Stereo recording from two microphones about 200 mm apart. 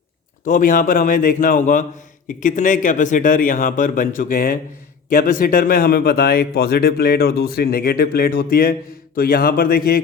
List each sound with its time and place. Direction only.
0.4 s speech: 45° left (ahead or behind)